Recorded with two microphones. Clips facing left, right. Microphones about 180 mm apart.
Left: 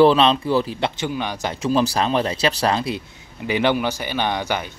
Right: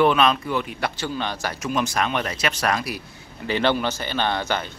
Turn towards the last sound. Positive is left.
turn(degrees=15)  # may be behind; listen again after turning